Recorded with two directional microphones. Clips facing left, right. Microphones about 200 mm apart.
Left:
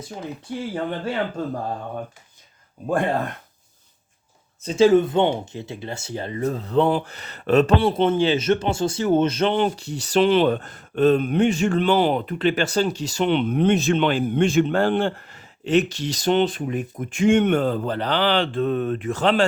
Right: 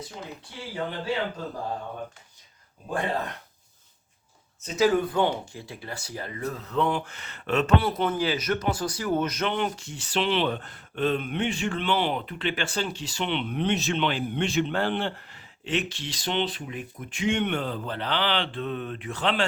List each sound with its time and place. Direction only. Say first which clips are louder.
0.7 s speech: left 2 dB; 50° left (ahead or behind)
4.6 s speech: left 7 dB; 30° left (ahead or behind)